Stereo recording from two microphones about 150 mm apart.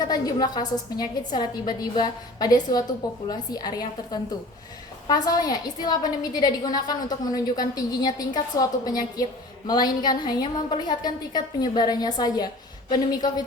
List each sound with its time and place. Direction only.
0.0 s a woman's voice: 25° left (ahead or behind)